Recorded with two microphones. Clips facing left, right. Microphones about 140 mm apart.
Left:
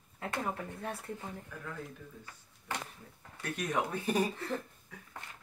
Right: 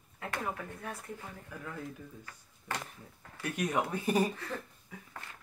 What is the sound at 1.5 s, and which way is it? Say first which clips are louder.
Speech: right 1 dB; 10° right (ahead or behind).